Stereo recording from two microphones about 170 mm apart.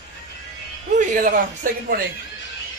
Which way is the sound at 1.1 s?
50° right (ahead or behind).